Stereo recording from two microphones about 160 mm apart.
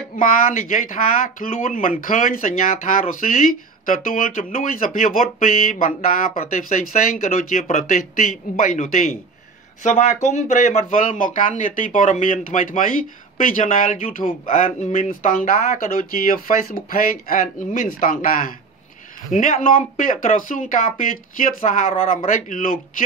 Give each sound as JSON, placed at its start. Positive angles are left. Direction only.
{"t": 0.1, "sound": "speech", "side_deg": 55}